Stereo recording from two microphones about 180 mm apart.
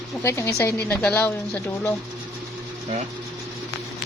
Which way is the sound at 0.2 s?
15° left (ahead or behind).